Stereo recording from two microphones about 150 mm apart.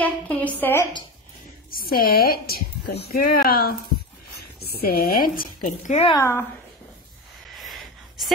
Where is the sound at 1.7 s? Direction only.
75° left (ahead or behind).